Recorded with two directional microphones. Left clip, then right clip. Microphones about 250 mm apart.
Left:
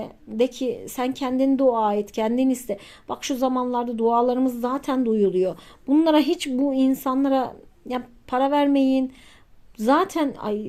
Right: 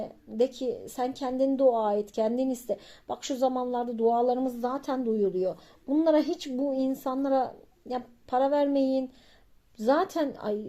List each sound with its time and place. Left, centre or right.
0.0 s a woman's voice: centre